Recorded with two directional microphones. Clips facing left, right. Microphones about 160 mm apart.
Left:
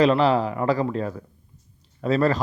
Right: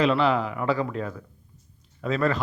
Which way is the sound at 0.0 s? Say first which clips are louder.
Left 4 dB; 40° left (ahead or behind).